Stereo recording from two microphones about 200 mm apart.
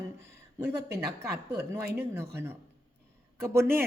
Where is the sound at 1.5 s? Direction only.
55° right (ahead or behind).